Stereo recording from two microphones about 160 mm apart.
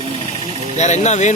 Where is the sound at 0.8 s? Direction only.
45° left (ahead or behind).